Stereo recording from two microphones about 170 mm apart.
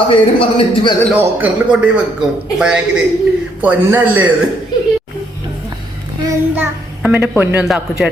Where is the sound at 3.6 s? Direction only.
10° right (ahead or behind).